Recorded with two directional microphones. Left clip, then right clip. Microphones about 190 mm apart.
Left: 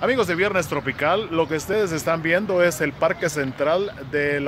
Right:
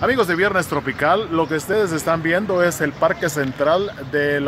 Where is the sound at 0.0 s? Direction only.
50° left (ahead or behind).